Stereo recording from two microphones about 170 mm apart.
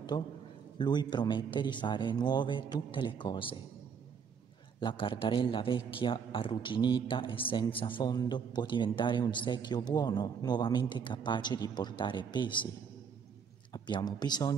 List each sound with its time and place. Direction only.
0.1 s a man's voice: 25° left (ahead or behind)
4.7 s a man's voice: 30° left (ahead or behind)
13.7 s a man's voice: 25° left (ahead or behind)